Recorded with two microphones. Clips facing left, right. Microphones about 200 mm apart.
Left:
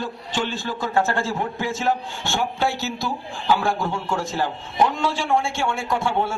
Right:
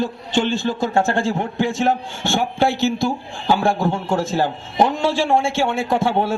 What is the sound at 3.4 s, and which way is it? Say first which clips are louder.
A man's voice: right 4 dB; 30° right (ahead or behind).